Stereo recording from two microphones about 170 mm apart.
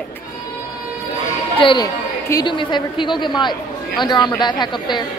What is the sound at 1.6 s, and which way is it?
A woman's voice, 30° left (ahead or behind).